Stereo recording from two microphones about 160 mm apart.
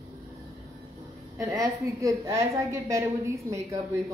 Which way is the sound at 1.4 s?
20° right (ahead or behind).